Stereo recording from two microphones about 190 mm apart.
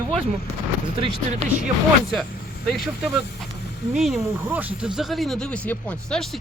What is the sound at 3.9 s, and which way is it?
Speech, 5° right (ahead or behind).